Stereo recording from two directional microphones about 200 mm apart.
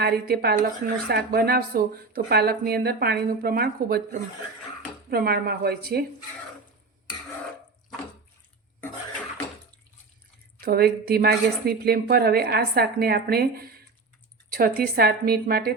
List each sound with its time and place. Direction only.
0.0 s speech: 50° right (ahead or behind)
5.1 s speech: 50° right (ahead or behind)
10.6 s speech: 50° right (ahead or behind)